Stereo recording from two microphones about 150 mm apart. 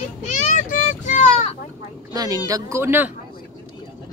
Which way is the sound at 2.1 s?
25° right (ahead or behind).